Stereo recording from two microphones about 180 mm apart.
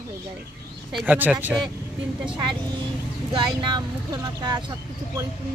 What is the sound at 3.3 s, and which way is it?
Speech, 25° right (ahead or behind).